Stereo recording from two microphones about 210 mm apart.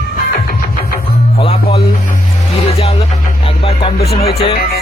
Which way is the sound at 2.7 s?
30° left (ahead or behind).